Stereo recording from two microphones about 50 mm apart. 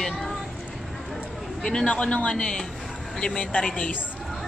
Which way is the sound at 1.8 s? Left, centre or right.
Left.